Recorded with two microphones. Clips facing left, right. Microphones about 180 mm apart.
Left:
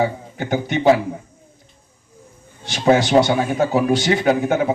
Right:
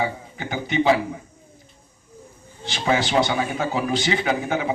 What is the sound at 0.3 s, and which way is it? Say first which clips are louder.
Speech: left 2 dB; 45° left (ahead or behind).